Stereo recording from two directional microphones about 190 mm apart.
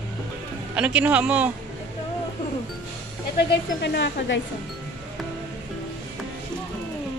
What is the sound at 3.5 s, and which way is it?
Speech, 60° left (ahead or behind).